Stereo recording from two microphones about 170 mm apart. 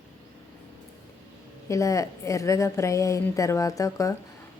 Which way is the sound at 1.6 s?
20° left (ahead or behind).